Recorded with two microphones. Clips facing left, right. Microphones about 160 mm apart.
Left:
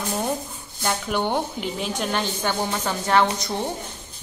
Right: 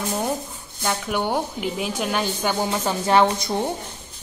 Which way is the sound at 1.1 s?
10° right (ahead or behind).